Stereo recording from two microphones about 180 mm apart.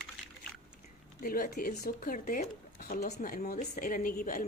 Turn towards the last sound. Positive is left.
turn(degrees=50)  # may be behind; listen again after turning